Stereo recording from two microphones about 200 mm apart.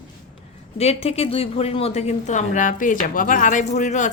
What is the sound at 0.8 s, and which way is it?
A woman's voice, 30° left (ahead or behind).